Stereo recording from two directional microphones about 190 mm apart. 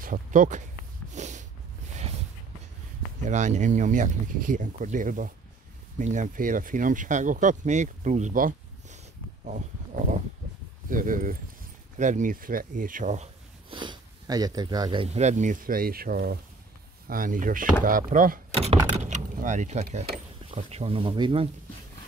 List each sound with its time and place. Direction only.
0.0 s speech: 45° right (ahead or behind)
1.1 s snort: 40° right (ahead or behind)
3.3 s speech: 40° right (ahead or behind); by 15.0 s 20° right (ahead or behind)
15.1 s speech: 40° right (ahead or behind)
18.5 s speech: 35° right (ahead or behind)